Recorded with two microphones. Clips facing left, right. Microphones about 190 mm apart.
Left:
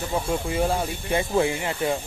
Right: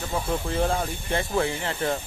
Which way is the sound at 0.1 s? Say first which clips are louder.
Left 1 dB; 10° left (ahead or behind).